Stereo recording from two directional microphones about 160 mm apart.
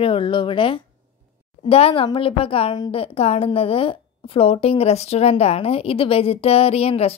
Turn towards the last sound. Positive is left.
turn(degrees=40)  # may be behind; listen again after turning